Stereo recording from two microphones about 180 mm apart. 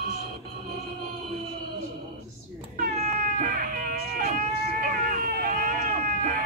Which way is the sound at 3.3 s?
50° right (ahead or behind).